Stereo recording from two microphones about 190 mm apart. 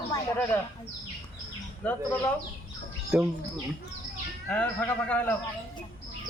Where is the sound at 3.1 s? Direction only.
5° right (ahead or behind).